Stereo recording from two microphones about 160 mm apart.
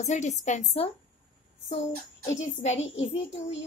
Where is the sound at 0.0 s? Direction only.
45° left (ahead or behind).